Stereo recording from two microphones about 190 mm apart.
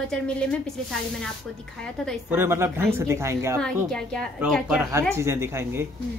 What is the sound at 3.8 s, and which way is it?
Speech, 5° left (ahead or behind).